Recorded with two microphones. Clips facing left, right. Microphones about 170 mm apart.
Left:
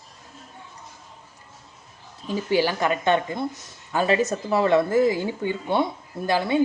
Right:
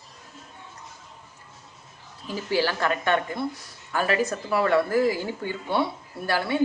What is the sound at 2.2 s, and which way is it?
Speech, 20° left (ahead or behind).